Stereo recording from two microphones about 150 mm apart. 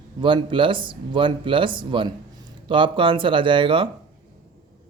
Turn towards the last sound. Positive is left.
turn(degrees=-35)  # may be behind; listen again after turning